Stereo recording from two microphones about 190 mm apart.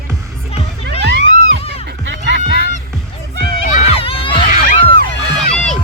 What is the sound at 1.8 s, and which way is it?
Music, 70° right (ahead or behind).